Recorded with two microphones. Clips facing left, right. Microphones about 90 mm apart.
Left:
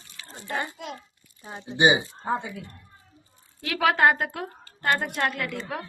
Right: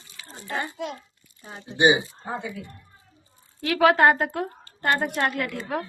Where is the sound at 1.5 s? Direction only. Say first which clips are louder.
Left 2 dB; 10° left (ahead or behind).